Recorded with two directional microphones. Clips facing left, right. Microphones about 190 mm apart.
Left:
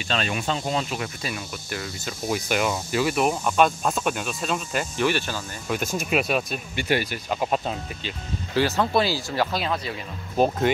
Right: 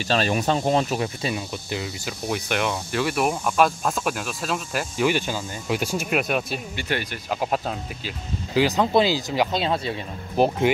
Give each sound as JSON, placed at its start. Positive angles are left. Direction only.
{"t": 0.0, "sound": "speech", "side_deg": -40}
{"t": 0.9, "sound": "speech", "side_deg": -25}
{"t": 2.2, "sound": "speech", "side_deg": 5}
{"t": 6.7, "sound": "speech", "side_deg": 10}
{"t": 7.2, "sound": "speech", "side_deg": -5}
{"t": 8.5, "sound": "speech", "side_deg": -15}
{"t": 9.6, "sound": "speech", "side_deg": -25}
{"t": 10.3, "sound": "speech", "side_deg": -15}